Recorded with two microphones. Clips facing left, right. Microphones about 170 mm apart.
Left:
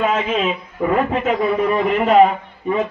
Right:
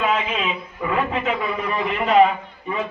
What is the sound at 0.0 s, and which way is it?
A man's voice, 45° left (ahead or behind).